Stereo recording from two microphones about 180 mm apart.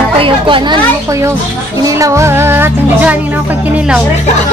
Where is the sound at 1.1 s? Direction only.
15° right (ahead or behind).